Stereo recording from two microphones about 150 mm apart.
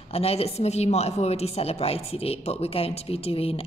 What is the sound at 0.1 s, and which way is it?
A woman's voice, 40° left (ahead or behind).